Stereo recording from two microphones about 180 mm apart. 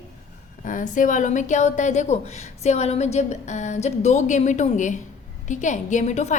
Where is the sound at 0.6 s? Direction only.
45° left (ahead or behind).